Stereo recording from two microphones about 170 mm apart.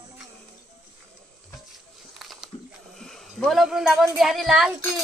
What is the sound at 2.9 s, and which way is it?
Speech, 5° left (ahead or behind).